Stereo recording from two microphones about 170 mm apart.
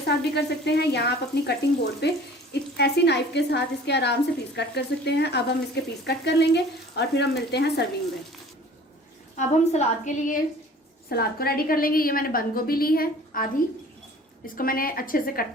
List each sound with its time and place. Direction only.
0.1 s speech: 80° left
9.3 s a woman's voice: 40° left (ahead or behind)
11.1 s a woman's voice: 65° left (ahead or behind)